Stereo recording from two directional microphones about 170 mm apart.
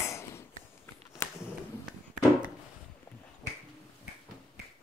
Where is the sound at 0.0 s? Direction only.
15° left (ahead or behind).